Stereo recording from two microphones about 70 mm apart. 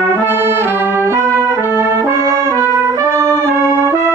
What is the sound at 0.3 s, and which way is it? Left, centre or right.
Brass instrument, right.